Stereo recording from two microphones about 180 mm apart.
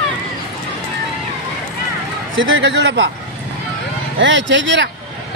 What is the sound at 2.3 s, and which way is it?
Speech, 90° right.